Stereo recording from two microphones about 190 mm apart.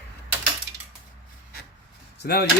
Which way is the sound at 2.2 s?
55° left (ahead or behind).